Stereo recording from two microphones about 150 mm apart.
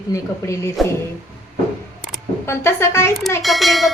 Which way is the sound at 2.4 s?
20° left (ahead or behind).